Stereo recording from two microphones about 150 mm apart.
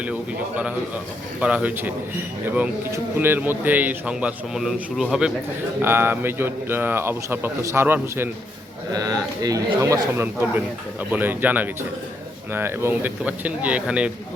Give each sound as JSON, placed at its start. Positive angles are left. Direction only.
{"t": 1.4, "sound": "a man's voice", "side_deg": -5}
{"t": 5.8, "sound": "a man's voice", "side_deg": -15}